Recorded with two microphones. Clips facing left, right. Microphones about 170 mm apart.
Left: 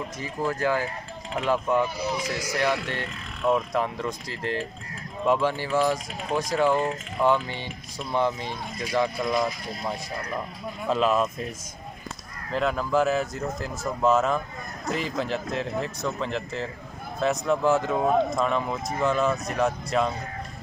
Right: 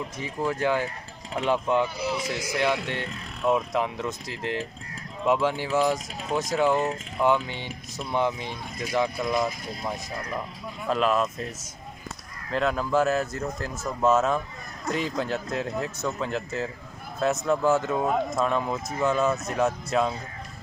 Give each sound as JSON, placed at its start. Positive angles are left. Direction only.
{"t": 0.6, "sound": "speech", "side_deg": -20}
{"t": 2.5, "sound": "speech", "side_deg": -15}
{"t": 10.9, "sound": "speech", "side_deg": 5}
{"t": 12.5, "sound": "speech", "side_deg": 0}